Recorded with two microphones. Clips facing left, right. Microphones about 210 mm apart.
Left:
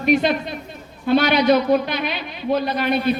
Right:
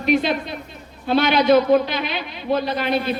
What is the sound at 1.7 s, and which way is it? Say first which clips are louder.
A man's voice: right 2 dB; 50° left (ahead or behind).